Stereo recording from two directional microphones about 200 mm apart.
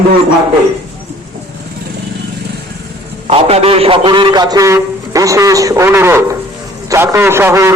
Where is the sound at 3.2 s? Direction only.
30° right (ahead or behind); by 7.7 s 15° right (ahead or behind).